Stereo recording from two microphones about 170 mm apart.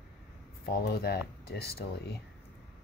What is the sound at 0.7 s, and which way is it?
Speech, 65° left (ahead or behind).